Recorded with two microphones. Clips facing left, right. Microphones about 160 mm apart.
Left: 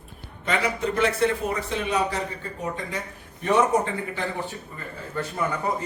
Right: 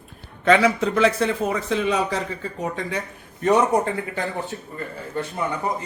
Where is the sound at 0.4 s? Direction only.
90° right.